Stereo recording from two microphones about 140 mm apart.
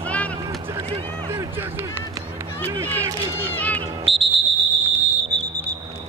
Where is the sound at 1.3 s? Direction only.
20° right (ahead or behind).